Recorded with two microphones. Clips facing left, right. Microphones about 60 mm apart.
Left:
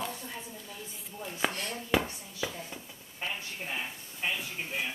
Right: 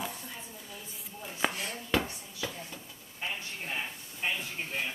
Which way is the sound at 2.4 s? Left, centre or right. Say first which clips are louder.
Left 2 dB; centre.